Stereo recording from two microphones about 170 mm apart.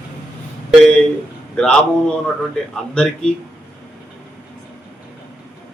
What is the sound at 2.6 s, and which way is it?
Speech, 5° left (ahead or behind).